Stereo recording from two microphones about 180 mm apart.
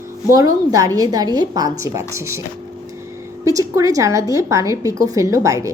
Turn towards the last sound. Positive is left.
turn(degrees=-15)  # may be behind; listen again after turning